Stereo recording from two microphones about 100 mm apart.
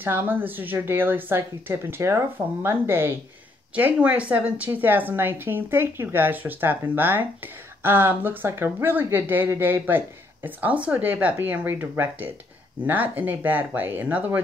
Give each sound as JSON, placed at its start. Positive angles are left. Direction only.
{"t": 0.0, "sound": "speech", "side_deg": -20}